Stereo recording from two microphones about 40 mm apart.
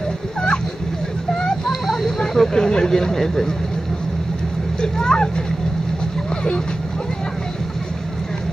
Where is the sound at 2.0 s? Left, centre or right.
Centre.